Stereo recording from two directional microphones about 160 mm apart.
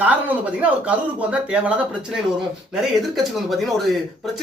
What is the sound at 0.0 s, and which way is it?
Speech, 10° right (ahead or behind).